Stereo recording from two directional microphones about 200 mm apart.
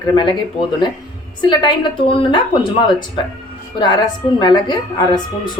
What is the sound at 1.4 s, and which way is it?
A woman's voice, 25° left (ahead or behind).